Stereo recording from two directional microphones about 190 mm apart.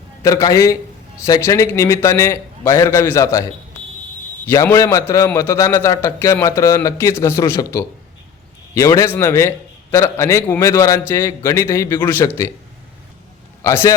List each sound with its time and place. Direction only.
0.2 s a man's voice: 15° left (ahead or behind)
4.4 s a man's voice: 15° left (ahead or behind)
13.7 s a man's voice: 15° left (ahead or behind)